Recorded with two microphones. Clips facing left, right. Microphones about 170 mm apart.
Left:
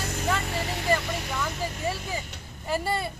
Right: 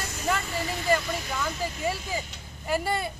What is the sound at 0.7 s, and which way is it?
Speech, 65° left (ahead or behind).